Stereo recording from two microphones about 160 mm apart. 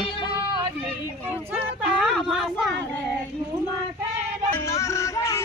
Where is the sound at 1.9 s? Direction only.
Centre (ahead or behind).